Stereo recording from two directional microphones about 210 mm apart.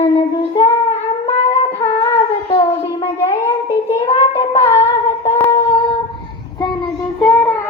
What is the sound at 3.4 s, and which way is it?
Child singing, 10° left (ahead or behind).